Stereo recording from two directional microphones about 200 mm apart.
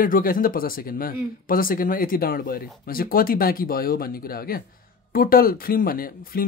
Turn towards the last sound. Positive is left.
turn(degrees=45)  # may be behind; listen again after turning